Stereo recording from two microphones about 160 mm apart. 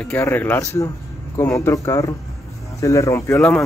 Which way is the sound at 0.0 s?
15° left (ahead or behind).